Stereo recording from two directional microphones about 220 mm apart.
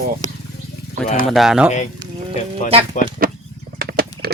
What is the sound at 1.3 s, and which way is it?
Speech, centre (ahead or behind).